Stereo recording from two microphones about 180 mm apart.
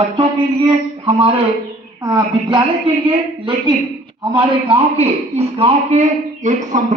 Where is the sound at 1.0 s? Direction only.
30° right (ahead or behind).